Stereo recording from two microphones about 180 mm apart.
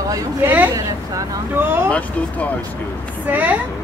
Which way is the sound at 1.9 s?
5° left (ahead or behind).